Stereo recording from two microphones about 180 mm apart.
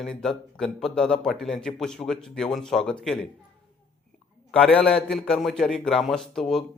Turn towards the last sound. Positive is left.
turn(degrees=0)  # may be behind; listen again after turning